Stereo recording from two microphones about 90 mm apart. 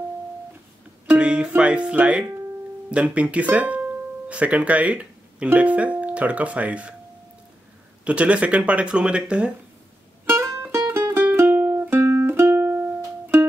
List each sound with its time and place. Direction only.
1.0 s music: 10° right (ahead or behind)
1.5 s speech: 15° right (ahead or behind)
8.0 s speech: 15° right (ahead or behind)
10.2 s music: 30° right (ahead or behind)